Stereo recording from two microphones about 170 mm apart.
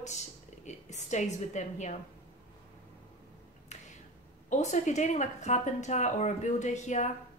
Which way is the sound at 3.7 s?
45° left (ahead or behind).